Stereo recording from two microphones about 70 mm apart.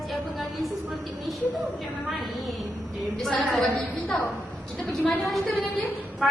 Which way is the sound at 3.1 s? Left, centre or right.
Centre.